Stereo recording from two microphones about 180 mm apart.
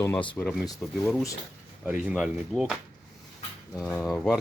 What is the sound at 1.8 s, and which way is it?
Speech, 5° right (ahead or behind).